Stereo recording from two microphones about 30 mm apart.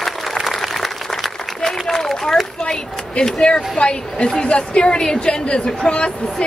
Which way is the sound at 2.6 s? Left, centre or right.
Left.